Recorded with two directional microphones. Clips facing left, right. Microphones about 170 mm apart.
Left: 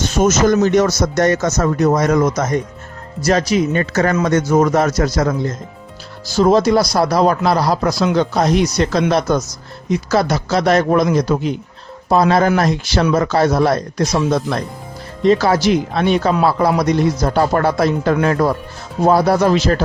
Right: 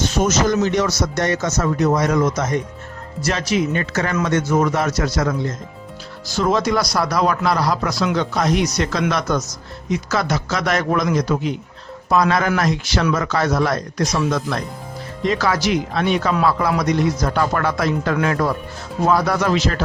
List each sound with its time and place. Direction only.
0.2 s a man's voice: 45° left (ahead or behind)
6.3 s speech: 35° left (ahead or behind)